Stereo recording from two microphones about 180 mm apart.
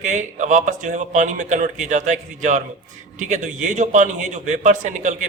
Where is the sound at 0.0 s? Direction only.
40° right (ahead or behind).